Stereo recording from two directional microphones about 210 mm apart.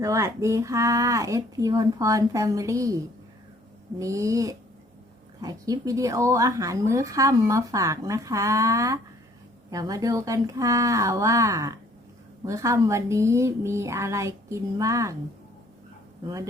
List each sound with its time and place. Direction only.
0.0 s speech: 15° right (ahead or behind)